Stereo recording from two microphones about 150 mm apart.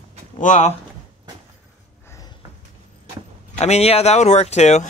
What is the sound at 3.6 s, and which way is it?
Speech, 45° left (ahead or behind).